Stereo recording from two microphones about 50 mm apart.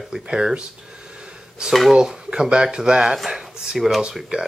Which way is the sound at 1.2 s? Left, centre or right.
Centre.